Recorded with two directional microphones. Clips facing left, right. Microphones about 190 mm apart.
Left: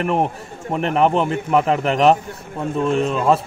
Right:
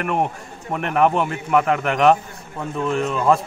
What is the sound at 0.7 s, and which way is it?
A man's voice, 30° left (ahead or behind).